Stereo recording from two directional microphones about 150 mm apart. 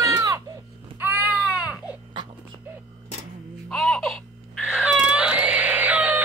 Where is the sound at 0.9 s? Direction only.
10° right (ahead or behind).